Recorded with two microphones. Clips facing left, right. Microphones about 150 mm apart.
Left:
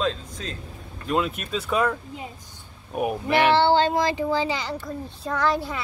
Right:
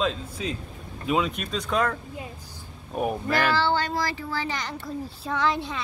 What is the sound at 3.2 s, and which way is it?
A child's voice, 25° left (ahead or behind).